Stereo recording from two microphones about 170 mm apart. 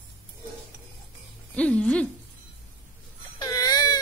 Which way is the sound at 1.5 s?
5° left (ahead or behind).